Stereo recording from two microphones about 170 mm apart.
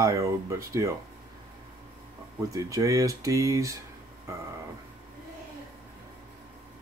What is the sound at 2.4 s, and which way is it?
Speech, 20° right (ahead or behind).